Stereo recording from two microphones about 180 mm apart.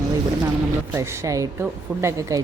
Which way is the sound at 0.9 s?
15° right (ahead or behind).